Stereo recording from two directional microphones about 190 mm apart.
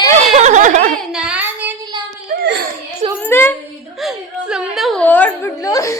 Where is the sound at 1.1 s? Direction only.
5° right (ahead or behind).